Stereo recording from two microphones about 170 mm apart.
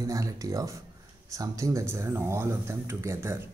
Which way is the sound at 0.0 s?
20° right (ahead or behind).